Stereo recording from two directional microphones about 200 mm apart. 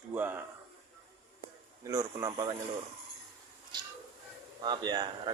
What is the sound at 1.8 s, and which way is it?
Speech, 20° right (ahead or behind).